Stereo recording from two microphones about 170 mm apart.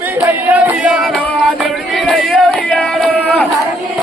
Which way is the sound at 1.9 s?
Centre (ahead or behind).